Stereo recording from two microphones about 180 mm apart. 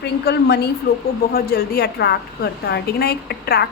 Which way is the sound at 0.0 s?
65° left (ahead or behind).